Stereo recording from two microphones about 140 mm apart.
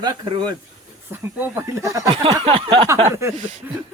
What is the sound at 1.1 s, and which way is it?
Speech, 15° right (ahead or behind).